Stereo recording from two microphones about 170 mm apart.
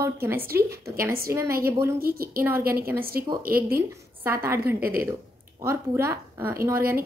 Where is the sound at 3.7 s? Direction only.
15° right (ahead or behind).